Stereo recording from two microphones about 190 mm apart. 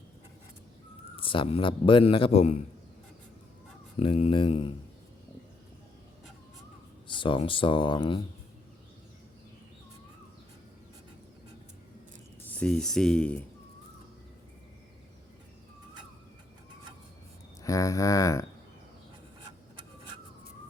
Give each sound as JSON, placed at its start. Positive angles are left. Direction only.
{"t": 1.1, "sound": "a man's voice", "side_deg": 25}
{"t": 4.0, "sound": "a man's voice", "side_deg": 30}
{"t": 7.1, "sound": "a man's voice", "side_deg": 25}
{"t": 12.5, "sound": "speech", "side_deg": 5}
{"t": 17.6, "sound": "speech", "side_deg": 15}